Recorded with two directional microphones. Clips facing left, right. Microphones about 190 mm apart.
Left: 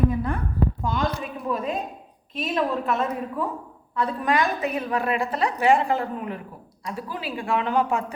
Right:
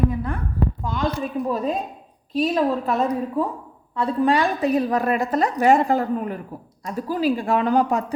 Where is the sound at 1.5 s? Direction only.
35° right (ahead or behind).